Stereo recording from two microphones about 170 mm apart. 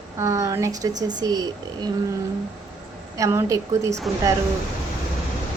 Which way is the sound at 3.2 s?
20° right (ahead or behind).